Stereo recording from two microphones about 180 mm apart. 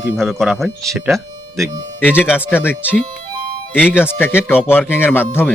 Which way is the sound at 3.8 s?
10° left (ahead or behind).